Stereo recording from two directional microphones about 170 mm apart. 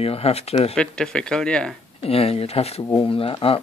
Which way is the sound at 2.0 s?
35° left (ahead or behind).